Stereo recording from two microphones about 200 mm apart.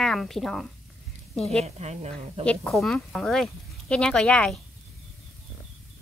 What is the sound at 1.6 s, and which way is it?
Speech, 35° right (ahead or behind).